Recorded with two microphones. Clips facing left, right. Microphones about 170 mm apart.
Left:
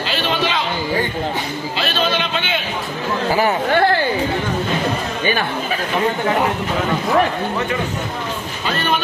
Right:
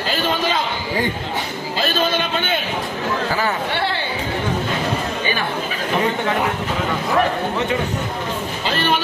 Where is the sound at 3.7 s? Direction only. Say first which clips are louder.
Left 7 dB; 50° left (ahead or behind).